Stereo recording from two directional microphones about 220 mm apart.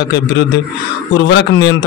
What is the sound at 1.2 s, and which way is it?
Speech, 50° left (ahead or behind).